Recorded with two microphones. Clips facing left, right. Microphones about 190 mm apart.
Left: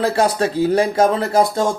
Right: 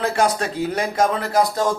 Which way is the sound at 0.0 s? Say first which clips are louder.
Left 3 dB; 30° left (ahead or behind).